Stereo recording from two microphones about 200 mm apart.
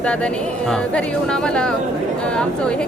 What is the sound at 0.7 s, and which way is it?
A man's voice, 5° left (ahead or behind).